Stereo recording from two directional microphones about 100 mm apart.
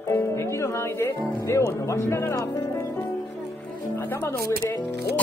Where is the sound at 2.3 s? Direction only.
30° left (ahead or behind).